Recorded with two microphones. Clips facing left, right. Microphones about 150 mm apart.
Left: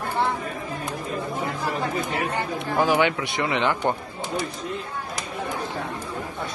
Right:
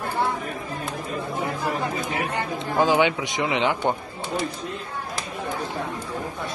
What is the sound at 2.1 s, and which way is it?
A man's voice, 15° right (ahead or behind).